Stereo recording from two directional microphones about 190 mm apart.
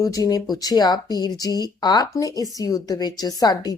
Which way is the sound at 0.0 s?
20° left (ahead or behind).